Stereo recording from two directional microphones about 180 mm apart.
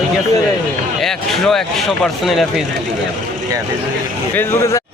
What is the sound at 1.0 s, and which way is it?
Speech, centre (ahead or behind).